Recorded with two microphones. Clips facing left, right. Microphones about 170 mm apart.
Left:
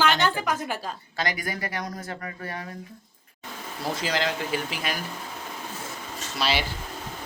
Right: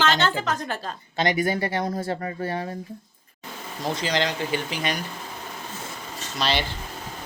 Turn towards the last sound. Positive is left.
turn(degrees=10)  # may be behind; listen again after turning